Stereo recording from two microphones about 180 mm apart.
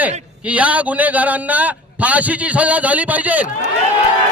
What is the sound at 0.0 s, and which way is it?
A man's voice, 5° right (ahead or behind).